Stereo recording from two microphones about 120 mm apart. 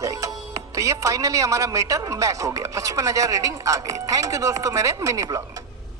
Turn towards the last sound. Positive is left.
turn(degrees=-25)  # may be behind; listen again after turning